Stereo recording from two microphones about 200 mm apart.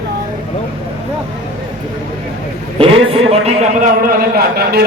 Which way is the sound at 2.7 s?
30° right (ahead or behind).